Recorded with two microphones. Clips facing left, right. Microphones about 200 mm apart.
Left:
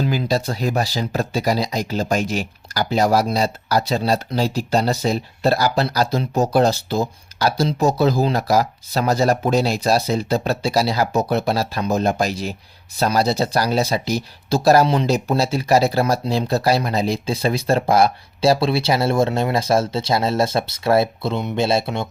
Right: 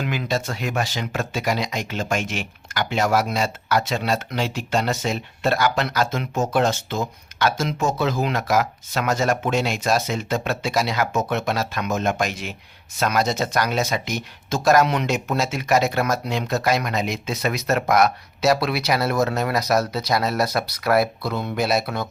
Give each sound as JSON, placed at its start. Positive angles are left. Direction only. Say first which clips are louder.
{"t": 0.0, "sound": "speech", "louder": "left 4 dB", "side_deg": 35}